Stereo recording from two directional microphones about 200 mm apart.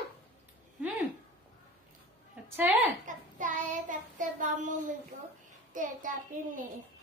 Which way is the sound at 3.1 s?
40° right (ahead or behind).